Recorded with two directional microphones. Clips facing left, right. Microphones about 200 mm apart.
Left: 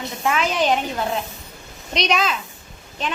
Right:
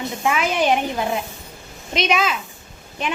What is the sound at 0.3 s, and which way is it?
Speech, 10° right (ahead or behind).